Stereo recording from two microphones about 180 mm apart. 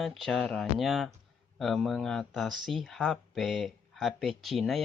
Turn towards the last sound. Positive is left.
turn(degrees=0)  # may be behind; listen again after turning